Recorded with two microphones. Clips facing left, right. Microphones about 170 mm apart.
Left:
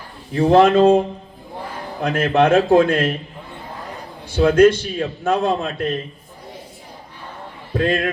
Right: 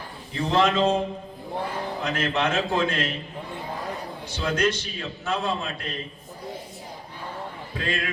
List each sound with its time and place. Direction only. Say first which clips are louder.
0.3 s a man's voice: left 9 dB; 50° left (ahead or behind)
4.3 s a man's voice: left 13 dB; 55° left (ahead or behind)
7.7 s a man's voice: left 11 dB; 50° left (ahead or behind)